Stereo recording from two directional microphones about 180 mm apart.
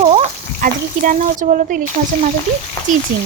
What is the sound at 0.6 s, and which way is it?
A woman's voice, 50° right (ahead or behind).